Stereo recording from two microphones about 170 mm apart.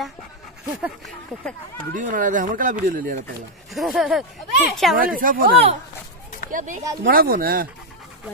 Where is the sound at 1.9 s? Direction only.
50° right (ahead or behind).